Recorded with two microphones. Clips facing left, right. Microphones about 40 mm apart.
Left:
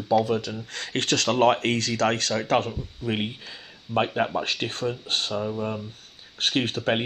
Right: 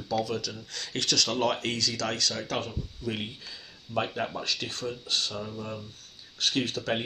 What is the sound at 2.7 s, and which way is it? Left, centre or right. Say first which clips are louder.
Speech: left 5 dB; left.